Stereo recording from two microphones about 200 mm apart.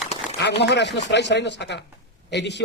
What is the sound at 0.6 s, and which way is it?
A man's voice, 60° left (ahead or behind).